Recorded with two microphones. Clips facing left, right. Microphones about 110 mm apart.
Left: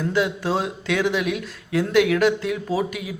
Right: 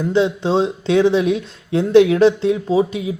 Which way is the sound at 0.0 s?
25° right (ahead or behind).